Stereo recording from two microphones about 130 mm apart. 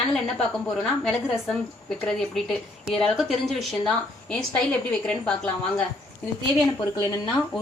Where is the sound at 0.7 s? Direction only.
5° left (ahead or behind).